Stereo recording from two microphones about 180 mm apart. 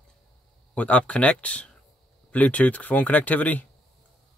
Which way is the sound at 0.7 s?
5° left (ahead or behind).